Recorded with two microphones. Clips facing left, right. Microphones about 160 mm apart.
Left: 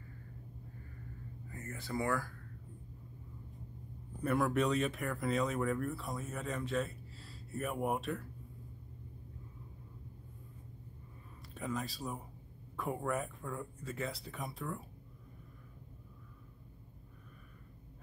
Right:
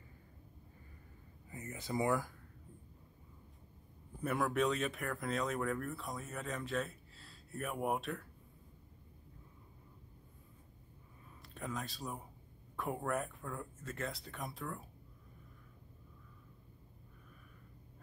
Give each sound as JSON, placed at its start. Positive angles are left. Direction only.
{"t": 1.5, "sound": "speech", "side_deg": -20}
{"t": 4.2, "sound": "speech", "side_deg": 0}
{"t": 11.5, "sound": "speech", "side_deg": 0}